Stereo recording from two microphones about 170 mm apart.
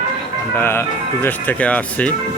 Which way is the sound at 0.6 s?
15° left (ahead or behind).